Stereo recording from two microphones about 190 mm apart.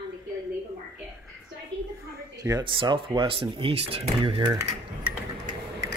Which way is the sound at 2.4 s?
20° right (ahead or behind).